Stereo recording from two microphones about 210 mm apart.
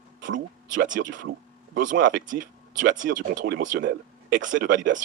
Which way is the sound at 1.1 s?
60° right (ahead or behind).